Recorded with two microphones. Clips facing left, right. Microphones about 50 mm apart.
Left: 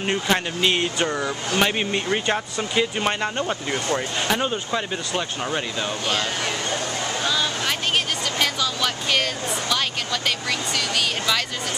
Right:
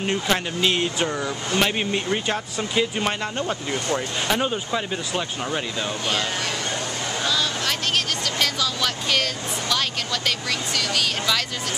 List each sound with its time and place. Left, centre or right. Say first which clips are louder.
0.0 s speech: left 1 dB; centre
7.2 s a sound: even; centre
8.4 s speech: left 1 dB; centre